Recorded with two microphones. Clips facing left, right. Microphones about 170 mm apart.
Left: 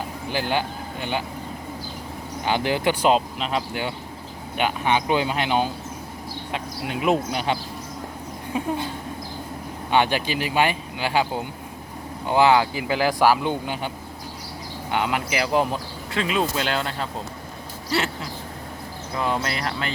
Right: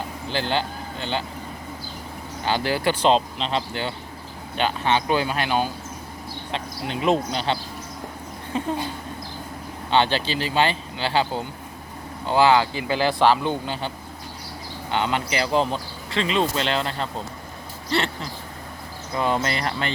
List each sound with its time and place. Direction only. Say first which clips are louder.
0.3 s speech: even; 10° left (ahead or behind)
2.4 s speech: left 1 dB; 15° left (ahead or behind)
6.5 s speech: even; 10° left (ahead or behind)
9.9 s speech: even; 10° left (ahead or behind)